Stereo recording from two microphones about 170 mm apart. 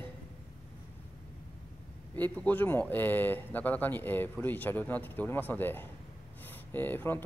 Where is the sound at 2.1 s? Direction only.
10° left (ahead or behind).